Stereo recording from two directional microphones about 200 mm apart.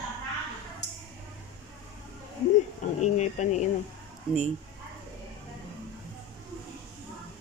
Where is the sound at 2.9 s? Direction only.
35° left (ahead or behind).